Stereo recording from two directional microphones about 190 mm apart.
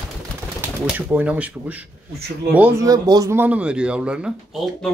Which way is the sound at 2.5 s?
15° right (ahead or behind).